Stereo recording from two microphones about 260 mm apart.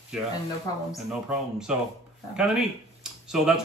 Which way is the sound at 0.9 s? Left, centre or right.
Centre.